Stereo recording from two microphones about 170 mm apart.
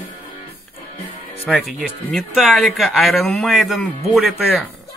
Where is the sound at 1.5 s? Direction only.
Centre (ahead or behind).